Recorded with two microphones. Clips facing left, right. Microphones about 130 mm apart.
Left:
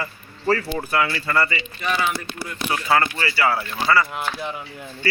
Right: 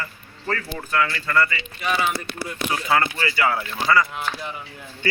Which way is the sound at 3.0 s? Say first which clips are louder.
Even; 20° right (ahead or behind).